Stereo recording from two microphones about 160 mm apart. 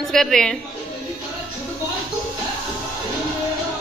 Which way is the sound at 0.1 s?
Centre (ahead or behind).